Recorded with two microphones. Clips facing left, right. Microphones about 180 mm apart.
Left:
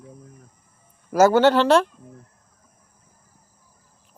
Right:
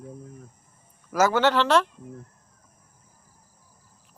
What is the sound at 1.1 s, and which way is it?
Speech, 30° left (ahead or behind).